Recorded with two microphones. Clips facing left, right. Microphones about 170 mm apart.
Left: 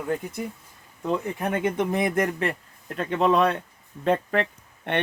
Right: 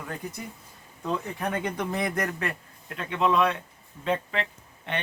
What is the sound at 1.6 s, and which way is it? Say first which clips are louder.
Speech: left 5 dB; 20° left (ahead or behind).